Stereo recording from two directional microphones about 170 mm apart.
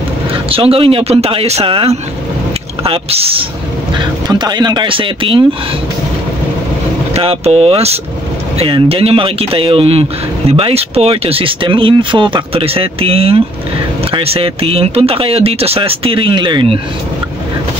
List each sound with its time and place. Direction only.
0.5 s speech: 35° right (ahead or behind)
4.0 s speech: 25° right (ahead or behind)
7.2 s speech: 35° right (ahead or behind)